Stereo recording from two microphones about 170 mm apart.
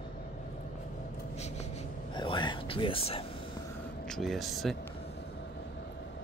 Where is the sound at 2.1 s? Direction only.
25° left (ahead or behind).